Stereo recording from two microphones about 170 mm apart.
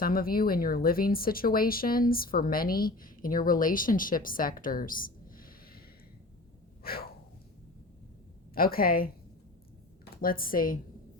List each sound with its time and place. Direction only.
0.0 s speech: 60° left (ahead or behind)
6.8 s breathing: 60° left (ahead or behind)
8.5 s speech: 60° left (ahead or behind)
10.2 s speech: 60° left (ahead or behind)